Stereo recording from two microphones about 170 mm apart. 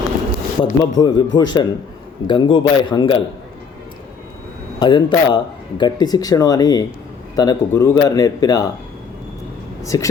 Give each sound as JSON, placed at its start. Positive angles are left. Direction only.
{"t": 0.6, "sound": "speech", "side_deg": 25}
{"t": 4.8, "sound": "speech", "side_deg": 30}
{"t": 9.8, "sound": "speech", "side_deg": 20}